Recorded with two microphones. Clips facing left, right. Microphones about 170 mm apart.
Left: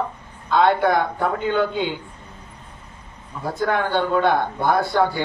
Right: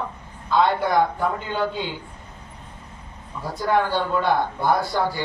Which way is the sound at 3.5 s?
55° left (ahead or behind).